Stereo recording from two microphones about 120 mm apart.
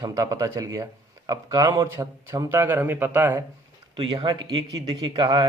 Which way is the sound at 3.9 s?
45° right (ahead or behind).